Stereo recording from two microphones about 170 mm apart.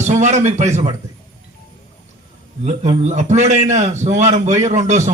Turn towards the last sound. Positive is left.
turn(degrees=-45)  # may be behind; listen again after turning